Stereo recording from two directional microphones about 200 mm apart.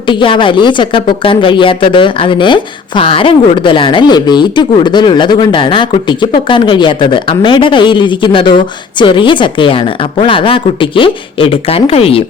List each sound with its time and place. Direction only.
0.1 s a woman's voice: 25° left (ahead or behind)